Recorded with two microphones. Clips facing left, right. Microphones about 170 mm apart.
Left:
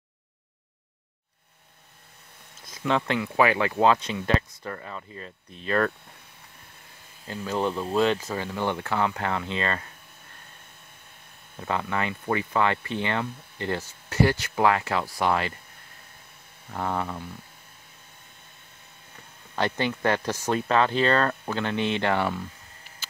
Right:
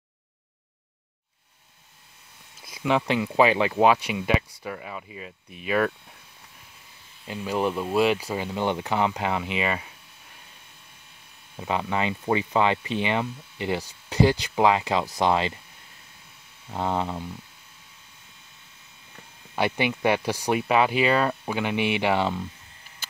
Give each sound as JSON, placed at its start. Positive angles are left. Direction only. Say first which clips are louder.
{"t": 2.6, "sound": "speech", "louder": "right 2 dB", "side_deg": -10}
{"t": 7.2, "sound": "speech", "louder": "right 1 dB", "side_deg": -10}
{"t": 11.6, "sound": "speech", "louder": "right 2 dB", "side_deg": -20}
{"t": 16.7, "sound": "a sound", "louder": "right 2 dB", "side_deg": -20}
{"t": 19.5, "sound": "speech", "louder": "right 2 dB", "side_deg": -10}